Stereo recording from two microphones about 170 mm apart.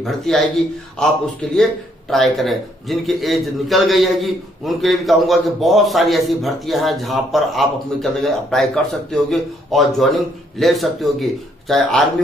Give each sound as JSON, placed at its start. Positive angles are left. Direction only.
{"t": 0.0, "sound": "a man's voice", "side_deg": 0}